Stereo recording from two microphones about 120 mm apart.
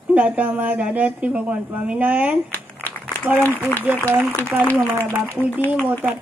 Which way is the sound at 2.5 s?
15° left (ahead or behind).